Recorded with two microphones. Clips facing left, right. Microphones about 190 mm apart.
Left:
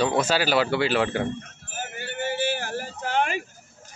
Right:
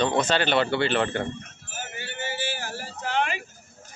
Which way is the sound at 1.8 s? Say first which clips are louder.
Left 4 dB; 50° left (ahead or behind).